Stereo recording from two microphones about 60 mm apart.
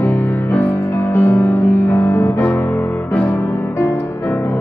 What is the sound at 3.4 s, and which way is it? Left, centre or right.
Music, left.